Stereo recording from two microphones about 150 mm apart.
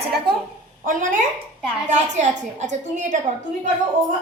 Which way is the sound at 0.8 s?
60° right (ahead or behind).